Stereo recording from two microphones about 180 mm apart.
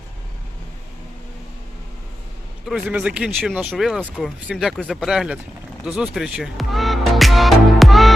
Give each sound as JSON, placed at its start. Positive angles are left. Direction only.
{"t": 2.6, "sound": "speech", "side_deg": -5}